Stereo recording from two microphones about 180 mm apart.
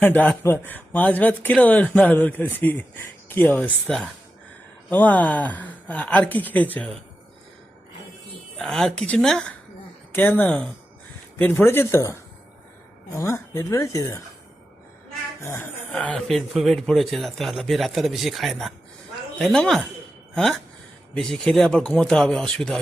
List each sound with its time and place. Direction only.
0.0 s speech: 10° left (ahead or behind)
8.5 s speech: centre (ahead or behind); by 14.2 s 15° left (ahead or behind)
15.4 s speech: 10° left (ahead or behind)